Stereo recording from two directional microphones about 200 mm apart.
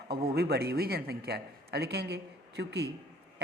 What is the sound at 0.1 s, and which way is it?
A woman's voice, 50° right (ahead or behind).